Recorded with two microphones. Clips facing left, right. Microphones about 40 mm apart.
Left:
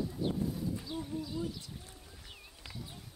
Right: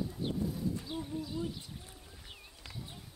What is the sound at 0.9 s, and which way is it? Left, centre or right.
Bird, centre.